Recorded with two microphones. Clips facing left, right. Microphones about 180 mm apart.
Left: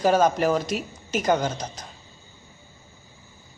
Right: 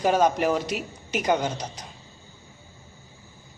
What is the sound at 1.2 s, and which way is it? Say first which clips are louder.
Speech: left 1 dB; 15° right (ahead or behind).